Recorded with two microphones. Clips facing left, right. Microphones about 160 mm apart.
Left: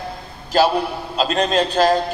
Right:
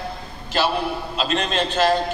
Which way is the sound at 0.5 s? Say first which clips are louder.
Left 5 dB; 40° left (ahead or behind).